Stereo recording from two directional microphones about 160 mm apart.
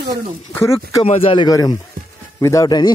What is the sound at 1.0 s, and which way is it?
Speech, 35° left (ahead or behind).